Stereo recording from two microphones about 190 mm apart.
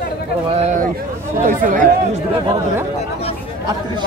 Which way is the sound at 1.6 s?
45° right (ahead or behind).